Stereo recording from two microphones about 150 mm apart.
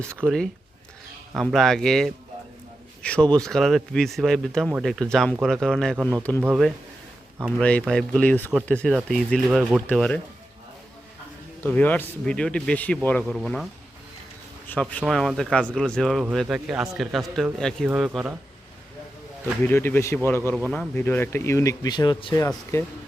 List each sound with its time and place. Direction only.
1.4 s speech: centre (ahead or behind)
7.6 s speech: 10° left (ahead or behind)
11.6 s speech: 10° left (ahead or behind)
14.7 s speech: 10° left (ahead or behind)
19.6 s speech: 15° left (ahead or behind); by 22.4 s 30° left (ahead or behind)
22.4 s speech: 20° left (ahead or behind)